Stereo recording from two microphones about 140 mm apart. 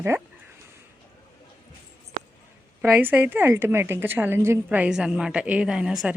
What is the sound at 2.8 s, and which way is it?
A woman's voice, 15° right (ahead or behind).